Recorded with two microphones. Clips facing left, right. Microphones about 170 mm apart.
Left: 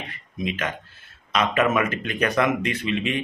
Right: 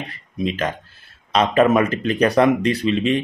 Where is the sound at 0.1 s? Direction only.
35° right (ahead or behind).